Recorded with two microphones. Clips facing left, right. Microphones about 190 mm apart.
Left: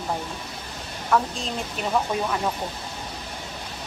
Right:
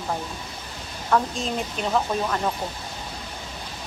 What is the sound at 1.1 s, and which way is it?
Speech, centre (ahead or behind).